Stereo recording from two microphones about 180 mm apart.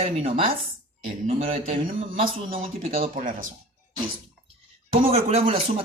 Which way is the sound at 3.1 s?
50° right (ahead or behind).